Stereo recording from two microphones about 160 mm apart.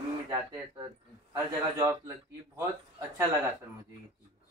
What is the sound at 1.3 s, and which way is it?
Speech, 15° right (ahead or behind).